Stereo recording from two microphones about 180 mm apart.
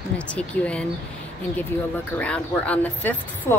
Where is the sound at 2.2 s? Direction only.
5° left (ahead or behind).